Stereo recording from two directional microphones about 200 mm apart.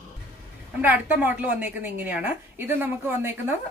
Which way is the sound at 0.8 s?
10° right (ahead or behind).